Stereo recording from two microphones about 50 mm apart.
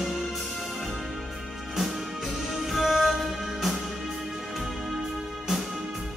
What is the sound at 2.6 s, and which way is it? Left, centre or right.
Music, centre.